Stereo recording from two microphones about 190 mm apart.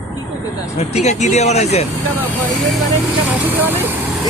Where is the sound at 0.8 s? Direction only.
35° left (ahead or behind).